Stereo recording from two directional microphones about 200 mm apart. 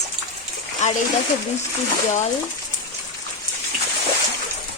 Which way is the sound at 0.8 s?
35° left (ahead or behind).